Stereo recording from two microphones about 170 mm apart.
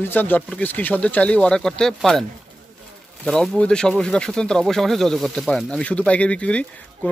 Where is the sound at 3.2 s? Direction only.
Centre (ahead or behind).